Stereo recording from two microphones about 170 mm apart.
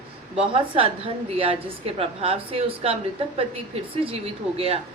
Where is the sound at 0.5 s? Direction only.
30° right (ahead or behind).